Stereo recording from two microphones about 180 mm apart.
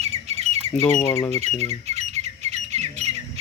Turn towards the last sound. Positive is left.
turn(degrees=-40)  # may be behind; listen again after turning